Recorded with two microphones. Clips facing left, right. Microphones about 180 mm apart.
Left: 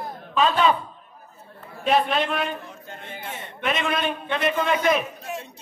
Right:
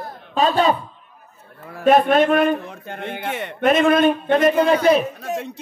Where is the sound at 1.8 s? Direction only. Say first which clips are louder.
Right 7 dB; 50° right (ahead or behind); by 3.5 s 75° right (ahead or behind).